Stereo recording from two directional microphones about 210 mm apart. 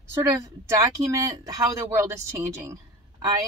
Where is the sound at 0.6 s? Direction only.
15° right (ahead or behind).